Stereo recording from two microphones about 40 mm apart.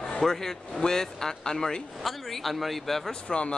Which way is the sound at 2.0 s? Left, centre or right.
Centre.